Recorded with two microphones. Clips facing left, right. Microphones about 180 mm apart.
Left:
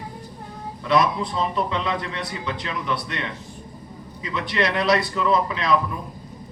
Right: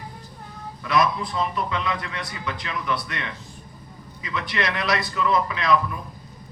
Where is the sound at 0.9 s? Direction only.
30° left (ahead or behind).